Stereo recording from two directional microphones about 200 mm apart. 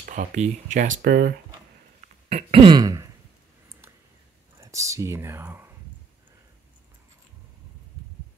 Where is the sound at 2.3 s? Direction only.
25° right (ahead or behind).